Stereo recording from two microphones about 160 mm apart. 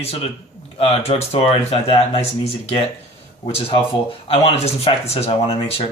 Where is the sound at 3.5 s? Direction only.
35° left (ahead or behind).